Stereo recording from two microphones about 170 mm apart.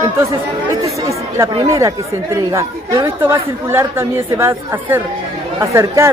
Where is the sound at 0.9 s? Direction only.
20° right (ahead or behind).